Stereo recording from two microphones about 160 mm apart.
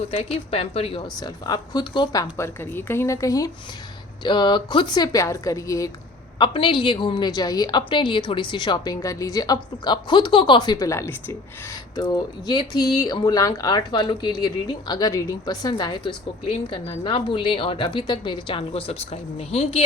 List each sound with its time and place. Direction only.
0.1 s speech: 40° left (ahead or behind)
1.1 s a woman's voice: 25° left (ahead or behind)
2.3 s a woman's voice: 15° left (ahead or behind)
6.4 s a woman's voice: 30° left (ahead or behind)